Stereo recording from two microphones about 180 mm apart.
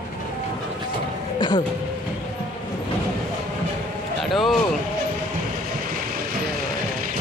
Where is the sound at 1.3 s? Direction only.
25° left (ahead or behind).